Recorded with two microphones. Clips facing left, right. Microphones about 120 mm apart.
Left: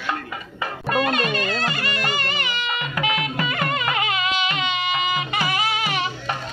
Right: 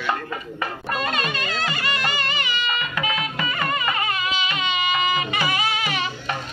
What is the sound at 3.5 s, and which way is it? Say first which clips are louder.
Music: right 1 dB; 70° left (ahead or behind).